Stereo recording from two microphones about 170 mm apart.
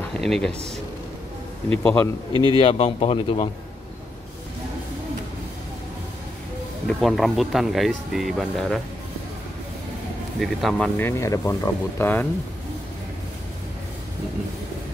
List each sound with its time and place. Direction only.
0.1 s speech: 5° left (ahead or behind)
1.7 s speech: 10° left (ahead or behind)
2.5 s speech: 30° left (ahead or behind)
6.9 s speech: centre (ahead or behind)
10.4 s speech: centre (ahead or behind)
11.0 s speech: 15° left (ahead or behind)